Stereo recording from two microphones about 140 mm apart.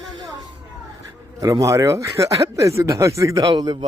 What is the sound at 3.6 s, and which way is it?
Speech, 35° right (ahead or behind).